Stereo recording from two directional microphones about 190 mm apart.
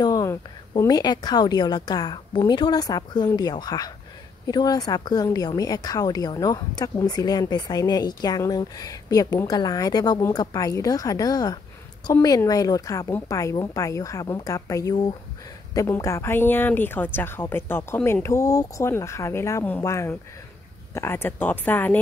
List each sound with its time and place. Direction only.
0.0 s a woman's voice: 20° left (ahead or behind)